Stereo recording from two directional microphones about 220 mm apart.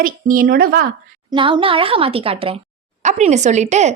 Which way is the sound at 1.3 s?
20° right (ahead or behind).